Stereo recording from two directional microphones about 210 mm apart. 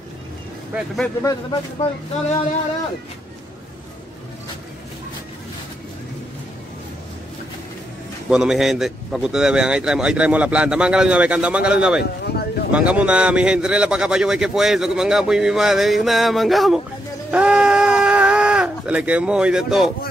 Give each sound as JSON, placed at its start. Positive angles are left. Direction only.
{"t": 0.7, "sound": "speech", "side_deg": 0}
{"t": 1.2, "sound": "speech", "side_deg": 20}
{"t": 8.3, "sound": "speech", "side_deg": -5}
{"t": 17.3, "sound": "a sound", "side_deg": -5}